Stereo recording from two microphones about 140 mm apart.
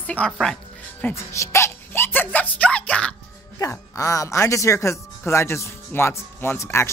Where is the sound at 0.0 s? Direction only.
10° left (ahead or behind).